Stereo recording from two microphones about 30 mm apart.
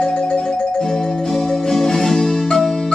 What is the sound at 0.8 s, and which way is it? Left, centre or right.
Music, centre.